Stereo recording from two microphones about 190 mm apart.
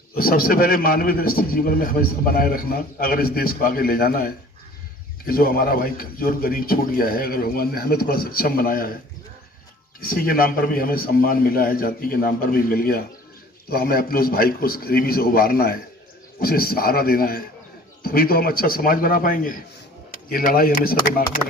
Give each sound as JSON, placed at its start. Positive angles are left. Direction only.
{"t": 0.1, "sound": "a man's voice", "side_deg": 50}
{"t": 10.0, "sound": "a man's voice", "side_deg": 50}